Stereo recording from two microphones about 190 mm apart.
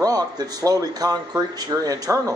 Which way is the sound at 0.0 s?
20° right (ahead or behind).